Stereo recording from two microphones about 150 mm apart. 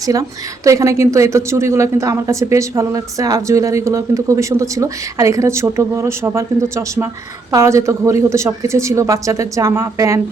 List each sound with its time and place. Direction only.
0.0 s speech: 25° right (ahead or behind)